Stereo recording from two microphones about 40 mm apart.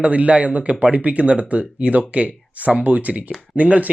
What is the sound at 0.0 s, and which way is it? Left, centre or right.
Speech, right.